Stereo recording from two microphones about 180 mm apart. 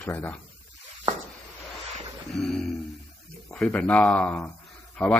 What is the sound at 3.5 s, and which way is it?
A man's voice, 10° left (ahead or behind).